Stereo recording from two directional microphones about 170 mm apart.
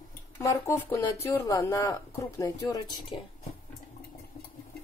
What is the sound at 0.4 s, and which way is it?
Speech, 15° left (ahead or behind).